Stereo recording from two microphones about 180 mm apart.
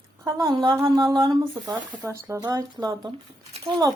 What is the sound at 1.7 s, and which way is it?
Speech, 10° right (ahead or behind).